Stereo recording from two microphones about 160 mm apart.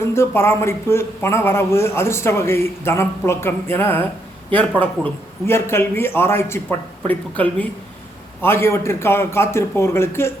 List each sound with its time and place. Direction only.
0.1 s speech: 15° left (ahead or behind)
5.5 s speech: 15° left (ahead or behind)